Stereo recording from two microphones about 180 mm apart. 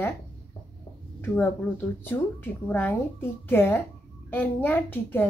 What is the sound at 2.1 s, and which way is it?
Speech, 10° left (ahead or behind).